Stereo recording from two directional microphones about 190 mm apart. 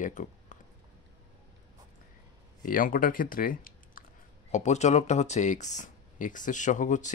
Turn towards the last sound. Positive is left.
turn(degrees=40)  # may be behind; listen again after turning